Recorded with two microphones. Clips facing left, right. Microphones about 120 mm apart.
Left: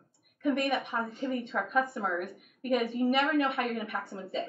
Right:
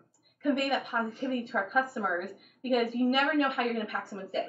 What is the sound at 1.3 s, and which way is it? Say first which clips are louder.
A woman's voice: even; centre (ahead or behind).